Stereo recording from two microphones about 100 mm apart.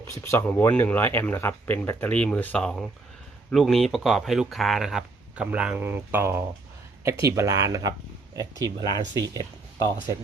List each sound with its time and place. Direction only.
0.1 s speech: 25° left (ahead or behind); by 9.5 s 40° right (ahead or behind)